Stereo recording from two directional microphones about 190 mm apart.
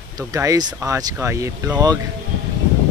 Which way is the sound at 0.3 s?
20° right (ahead or behind).